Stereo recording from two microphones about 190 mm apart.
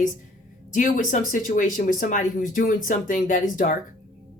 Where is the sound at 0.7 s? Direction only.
45° left (ahead or behind).